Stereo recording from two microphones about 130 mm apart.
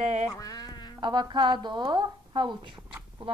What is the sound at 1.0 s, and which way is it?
A woman's voice, 35° right (ahead or behind).